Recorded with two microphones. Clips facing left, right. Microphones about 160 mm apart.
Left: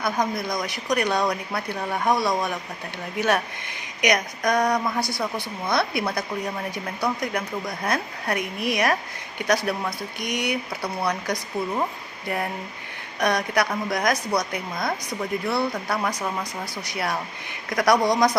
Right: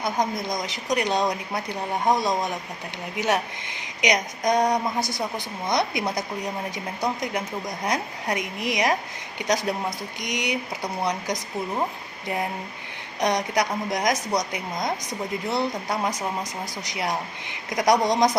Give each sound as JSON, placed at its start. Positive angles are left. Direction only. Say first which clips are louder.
{"t": 0.0, "sound": "speech", "louder": "left 1 dB", "side_deg": -20}
{"t": 13.1, "sound": "speech", "louder": "even", "side_deg": -20}